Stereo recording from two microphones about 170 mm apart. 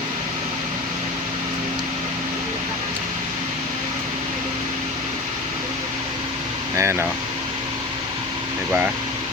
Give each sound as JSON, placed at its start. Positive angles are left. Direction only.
{"t": 6.7, "sound": "speech", "side_deg": -15}